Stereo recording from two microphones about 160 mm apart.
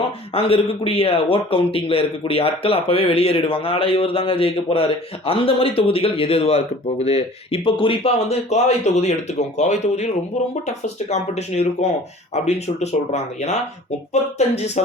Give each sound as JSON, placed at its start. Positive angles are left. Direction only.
{"t": 0.3, "sound": "a man's voice", "side_deg": 35}